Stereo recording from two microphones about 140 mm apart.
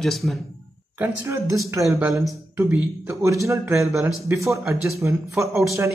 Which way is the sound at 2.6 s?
10° right (ahead or behind).